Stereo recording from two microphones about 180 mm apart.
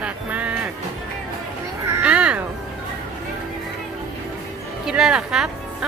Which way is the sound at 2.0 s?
5° right (ahead or behind).